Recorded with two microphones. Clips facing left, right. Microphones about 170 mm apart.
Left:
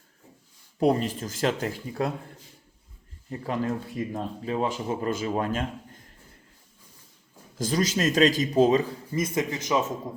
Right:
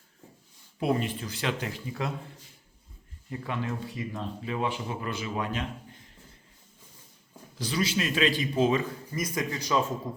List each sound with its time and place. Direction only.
0.8 s speech: 40° left (ahead or behind)
3.2 s speech: 35° left (ahead or behind)
7.6 s speech: 45° left (ahead or behind); by 9.8 s 20° left (ahead or behind)